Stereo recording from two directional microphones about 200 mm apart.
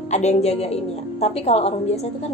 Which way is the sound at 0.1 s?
35° left (ahead or behind).